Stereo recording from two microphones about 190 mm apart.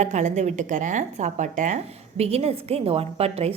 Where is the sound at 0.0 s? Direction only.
40° right (ahead or behind).